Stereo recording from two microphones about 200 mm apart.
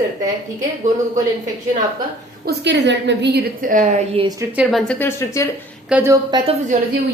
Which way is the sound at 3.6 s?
40° right (ahead or behind).